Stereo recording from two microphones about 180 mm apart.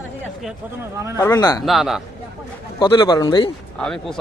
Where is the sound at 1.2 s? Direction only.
20° left (ahead or behind).